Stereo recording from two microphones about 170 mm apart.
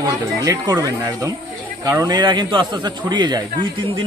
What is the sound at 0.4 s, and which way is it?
Speech, 20° right (ahead or behind).